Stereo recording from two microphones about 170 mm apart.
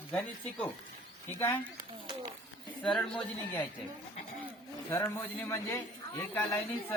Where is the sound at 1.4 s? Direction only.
10° left (ahead or behind).